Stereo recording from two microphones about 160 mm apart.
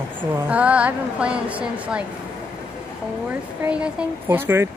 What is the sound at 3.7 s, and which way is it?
A woman's voice, 5° right (ahead or behind).